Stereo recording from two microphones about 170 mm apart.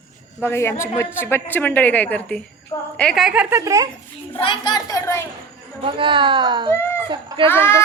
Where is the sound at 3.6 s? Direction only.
20° right (ahead or behind).